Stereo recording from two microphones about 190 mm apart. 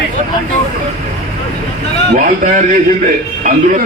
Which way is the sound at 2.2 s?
45° right (ahead or behind).